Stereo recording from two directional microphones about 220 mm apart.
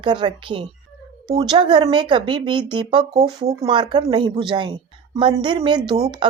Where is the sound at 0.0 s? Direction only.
20° right (ahead or behind).